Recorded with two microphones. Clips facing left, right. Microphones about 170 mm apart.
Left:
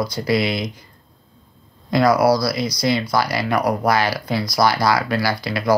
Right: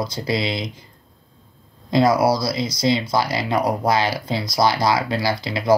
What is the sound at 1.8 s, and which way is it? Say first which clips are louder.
Speech: left 1 dB; 25° right (ahead or behind).